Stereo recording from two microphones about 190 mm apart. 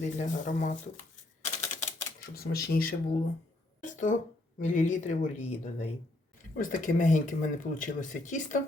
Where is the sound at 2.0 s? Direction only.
55° left (ahead or behind).